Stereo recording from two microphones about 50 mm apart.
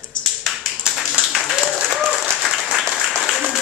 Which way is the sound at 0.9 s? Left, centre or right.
Centre.